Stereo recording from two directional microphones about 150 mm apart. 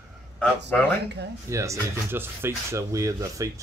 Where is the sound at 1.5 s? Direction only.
20° right (ahead or behind).